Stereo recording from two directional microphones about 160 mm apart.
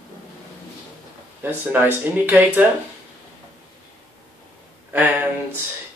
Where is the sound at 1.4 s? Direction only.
15° right (ahead or behind).